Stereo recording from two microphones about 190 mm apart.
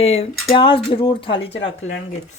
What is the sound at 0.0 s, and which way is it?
Speech, 35° left (ahead or behind).